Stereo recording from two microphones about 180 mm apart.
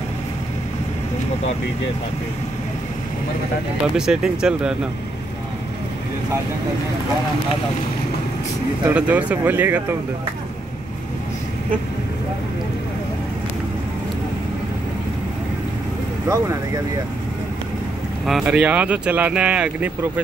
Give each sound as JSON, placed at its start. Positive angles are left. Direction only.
{"t": 3.9, "sound": "speech", "side_deg": -5}
{"t": 8.8, "sound": "speech", "side_deg": -5}
{"t": 16.3, "sound": "speech", "side_deg": -15}
{"t": 18.2, "sound": "speech", "side_deg": -5}